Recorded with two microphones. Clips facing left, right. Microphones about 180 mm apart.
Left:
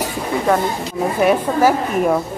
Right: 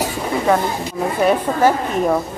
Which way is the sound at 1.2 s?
10° left (ahead or behind).